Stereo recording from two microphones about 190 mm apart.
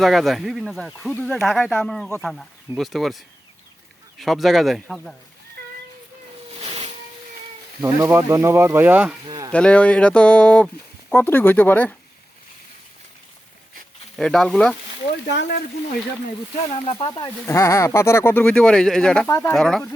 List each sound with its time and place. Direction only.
0.0 s speech: centre (ahead or behind)
6.6 s a sound: 35° right (ahead or behind)
7.8 s speech: 15° right (ahead or behind)
9.2 s a sound: 20° right (ahead or behind)
9.5 s speech: 5° left (ahead or behind)
14.2 s speech: centre (ahead or behind)
15.3 s speech: 65° left (ahead or behind)
16.8 s speech: 30° left (ahead or behind)
17.1 s speech: 15° left (ahead or behind)
19.3 s speech: 15° left (ahead or behind)
19.5 s speech: centre (ahead or behind)